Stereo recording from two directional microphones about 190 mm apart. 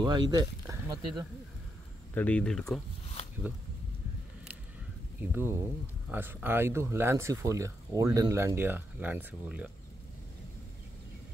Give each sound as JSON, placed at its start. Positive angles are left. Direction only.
{"t": 0.0, "sound": "speech", "side_deg": -20}
{"t": 2.1, "sound": "speech", "side_deg": 5}
{"t": 5.3, "sound": "speech", "side_deg": -10}